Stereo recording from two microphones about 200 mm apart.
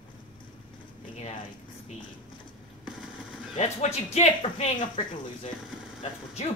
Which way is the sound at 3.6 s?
35° left (ahead or behind).